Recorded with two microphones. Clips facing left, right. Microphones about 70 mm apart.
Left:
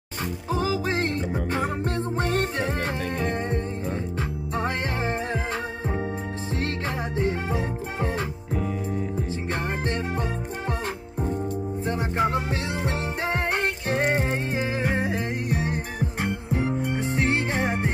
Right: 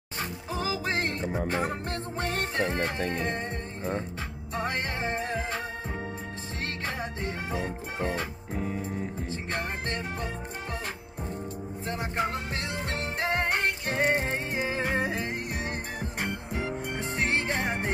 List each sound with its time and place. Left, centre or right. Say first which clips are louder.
0.5 s music: left 6 dB; centre
2.5 s music: left 1 dB; centre
4.6 s music: left 3 dB; left
7.4 s music: left 4 dB; left
9.3 s music: left 4 dB; left
11.8 s music: left 5 dB; centre
14.5 s music: left 3 dB; left
17.2 s music: left 3 dB; centre